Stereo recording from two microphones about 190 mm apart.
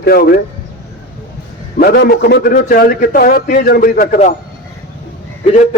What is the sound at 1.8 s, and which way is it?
A man's voice, 55° left (ahead or behind).